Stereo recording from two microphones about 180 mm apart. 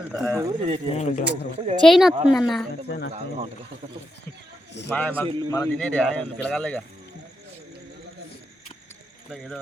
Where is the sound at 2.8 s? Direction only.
65° left (ahead or behind).